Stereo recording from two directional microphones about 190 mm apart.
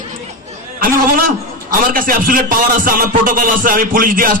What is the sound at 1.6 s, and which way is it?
A man's voice, 45° right (ahead or behind).